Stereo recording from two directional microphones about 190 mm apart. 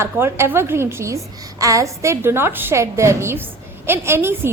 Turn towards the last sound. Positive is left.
turn(degrees=-10)  # may be behind; listen again after turning